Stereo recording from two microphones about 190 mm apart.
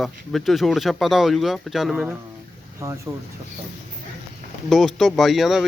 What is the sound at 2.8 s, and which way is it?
Speech, 15° right (ahead or behind).